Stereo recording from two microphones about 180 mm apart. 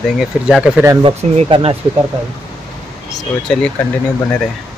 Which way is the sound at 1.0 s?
35° right (ahead or behind).